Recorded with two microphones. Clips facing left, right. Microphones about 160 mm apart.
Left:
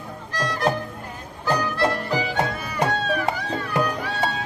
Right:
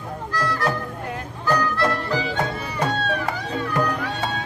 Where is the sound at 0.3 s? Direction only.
20° left (ahead or behind).